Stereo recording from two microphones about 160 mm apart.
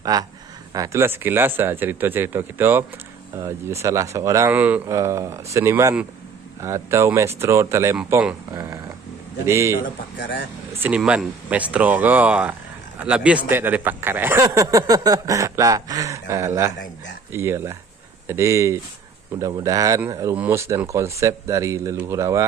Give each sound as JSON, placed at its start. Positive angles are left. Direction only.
{"t": 0.0, "sound": "speech", "side_deg": -25}
{"t": 8.5, "sound": "speech", "side_deg": -20}
{"t": 9.8, "sound": "a man's voice", "side_deg": 60}
{"t": 10.7, "sound": "a sound", "side_deg": -15}
{"t": 11.0, "sound": "speech", "side_deg": -5}